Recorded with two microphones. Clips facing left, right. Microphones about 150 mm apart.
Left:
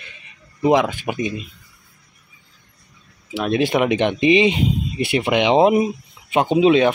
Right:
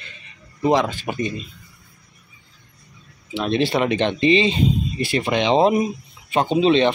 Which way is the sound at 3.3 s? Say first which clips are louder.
Left 2 dB; 10° left (ahead or behind).